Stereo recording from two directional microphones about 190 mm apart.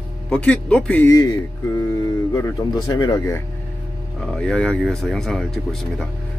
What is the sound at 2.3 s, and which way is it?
Speech, 20° left (ahead or behind).